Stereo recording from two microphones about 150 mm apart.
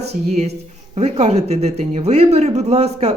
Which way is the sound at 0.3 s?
45° right (ahead or behind).